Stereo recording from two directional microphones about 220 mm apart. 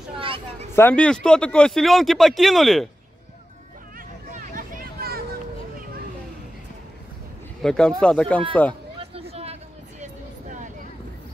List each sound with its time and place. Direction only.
0.2 s a sound: 25° right (ahead or behind)
0.7 s speech: 5° left (ahead or behind)
4.3 s vehicle: 35° right (ahead or behind)
7.6 s speech: 5° left (ahead or behind)
9.0 s a sound: 25° right (ahead or behind)
10.5 s vehicle: 35° right (ahead or behind)